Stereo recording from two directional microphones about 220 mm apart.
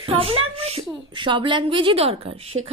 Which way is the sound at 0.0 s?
25° right (ahead or behind).